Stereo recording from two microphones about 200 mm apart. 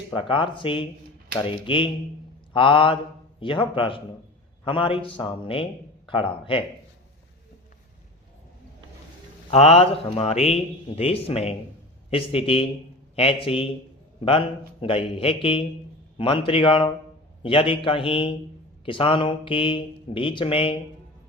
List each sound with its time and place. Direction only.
0.1 s speech: 25° left (ahead or behind)
9.5 s speech: 30° left (ahead or behind)